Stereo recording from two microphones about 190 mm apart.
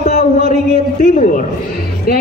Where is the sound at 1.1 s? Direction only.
45° left (ahead or behind).